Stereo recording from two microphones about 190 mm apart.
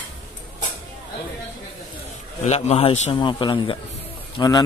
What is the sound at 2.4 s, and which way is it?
A man's voice, 35° left (ahead or behind).